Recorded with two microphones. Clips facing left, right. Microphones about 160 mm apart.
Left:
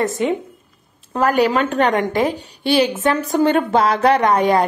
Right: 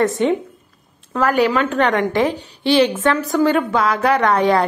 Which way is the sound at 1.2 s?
40° left (ahead or behind).